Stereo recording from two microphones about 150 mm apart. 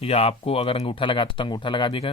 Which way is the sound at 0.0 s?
40° left (ahead or behind).